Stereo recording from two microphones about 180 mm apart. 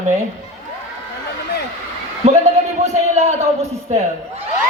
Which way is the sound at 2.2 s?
35° right (ahead or behind).